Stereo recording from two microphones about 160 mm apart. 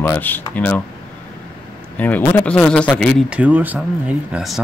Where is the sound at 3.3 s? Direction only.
10° right (ahead or behind).